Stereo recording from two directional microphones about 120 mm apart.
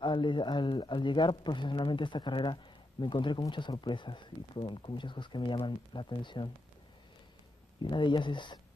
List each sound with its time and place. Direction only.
0.0 s a man's voice: 40° left (ahead or behind)
7.8 s a man's voice: 40° left (ahead or behind)